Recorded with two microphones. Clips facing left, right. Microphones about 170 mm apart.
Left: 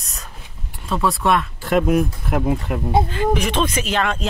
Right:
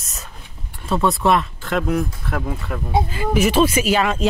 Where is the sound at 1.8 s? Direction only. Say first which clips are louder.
Left 4 dB; 15° left (ahead or behind).